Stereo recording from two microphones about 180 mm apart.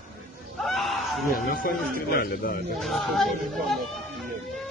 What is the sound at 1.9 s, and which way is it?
Speech, 60° left (ahead or behind).